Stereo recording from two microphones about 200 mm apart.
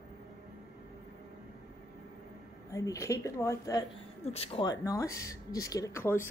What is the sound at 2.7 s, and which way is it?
Speech, 15° left (ahead or behind).